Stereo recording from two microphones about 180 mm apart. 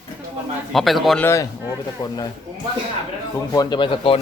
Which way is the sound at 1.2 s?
15° left (ahead or behind).